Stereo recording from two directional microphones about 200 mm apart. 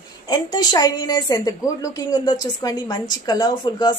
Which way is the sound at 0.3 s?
20° left (ahead or behind).